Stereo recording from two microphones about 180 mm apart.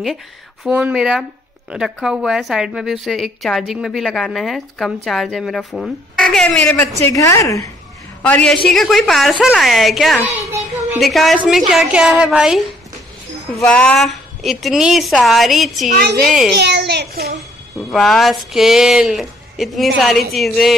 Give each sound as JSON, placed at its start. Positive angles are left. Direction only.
{"t": 0.7, "sound": "a woman's voice", "side_deg": -5}
{"t": 7.0, "sound": "a woman's voice", "side_deg": 15}
{"t": 8.2, "sound": "a woman's voice", "side_deg": 5}
{"t": 15.9, "sound": "a woman's voice", "side_deg": -65}
{"t": 16.3, "sound": "a woman's voice", "side_deg": 0}
{"t": 16.5, "sound": "a child's voice", "side_deg": -70}
{"t": 17.7, "sound": "a woman's voice", "side_deg": 0}